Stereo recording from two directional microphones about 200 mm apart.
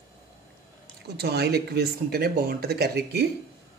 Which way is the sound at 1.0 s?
55° right (ahead or behind).